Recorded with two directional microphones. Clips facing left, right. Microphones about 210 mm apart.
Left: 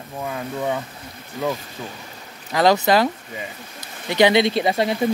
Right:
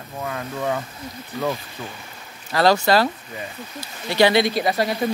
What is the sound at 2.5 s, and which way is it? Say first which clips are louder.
Speech: left 1 dB; 20° left (ahead or behind).